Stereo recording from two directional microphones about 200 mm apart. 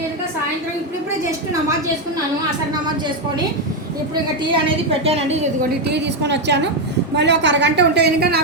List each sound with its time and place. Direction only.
5.0 s a woman's voice: 30° right (ahead or behind)
5.9 s a woman's voice: 60° right (ahead or behind)